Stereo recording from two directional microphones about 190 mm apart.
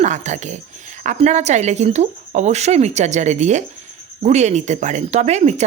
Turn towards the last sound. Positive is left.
turn(degrees=-35)  # may be behind; listen again after turning